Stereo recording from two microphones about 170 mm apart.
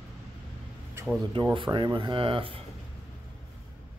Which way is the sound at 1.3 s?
30° right (ahead or behind).